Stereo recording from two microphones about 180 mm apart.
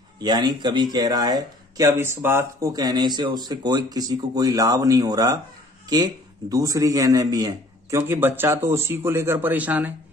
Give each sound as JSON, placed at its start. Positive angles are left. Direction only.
{"t": 0.2, "sound": "a man's voice", "side_deg": -25}